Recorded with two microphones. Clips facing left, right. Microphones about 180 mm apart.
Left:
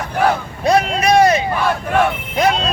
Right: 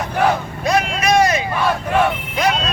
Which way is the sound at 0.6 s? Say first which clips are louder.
Left 5 dB; 35° left (ahead or behind).